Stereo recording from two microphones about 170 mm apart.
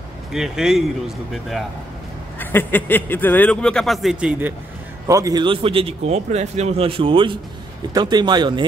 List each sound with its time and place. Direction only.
0.3 s speech: 5° right (ahead or behind)
2.3 s speech: 10° left (ahead or behind); by 4.6 s 10° right (ahead or behind)
5.0 s a man's voice: 20° right (ahead or behind)